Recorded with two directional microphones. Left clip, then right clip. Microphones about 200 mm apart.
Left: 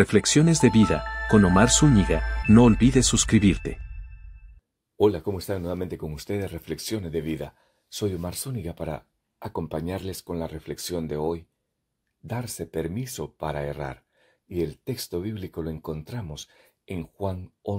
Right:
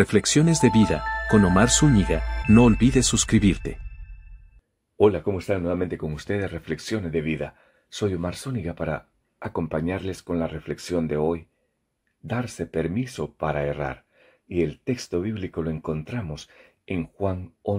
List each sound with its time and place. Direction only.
0.0 s speech: centre (ahead or behind)
4.9 s speech: 35° left (ahead or behind)
12.5 s speech: 35° left (ahead or behind)